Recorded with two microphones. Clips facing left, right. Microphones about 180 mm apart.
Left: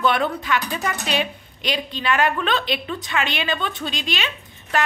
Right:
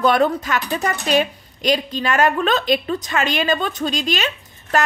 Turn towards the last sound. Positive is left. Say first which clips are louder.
# right 5 dB
turn(degrees=-45)  # may be behind; listen again after turning